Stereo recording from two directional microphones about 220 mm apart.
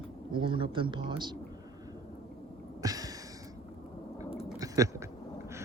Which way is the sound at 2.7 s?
15° right (ahead or behind).